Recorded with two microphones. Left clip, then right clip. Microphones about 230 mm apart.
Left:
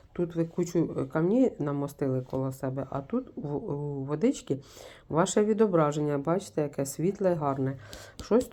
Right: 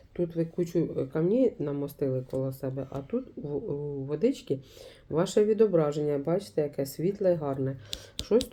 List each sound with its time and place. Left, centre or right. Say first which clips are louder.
0.2 s speech: even; left